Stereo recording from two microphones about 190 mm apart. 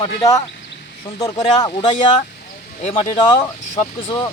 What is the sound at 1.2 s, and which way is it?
Speech, 20° left (ahead or behind).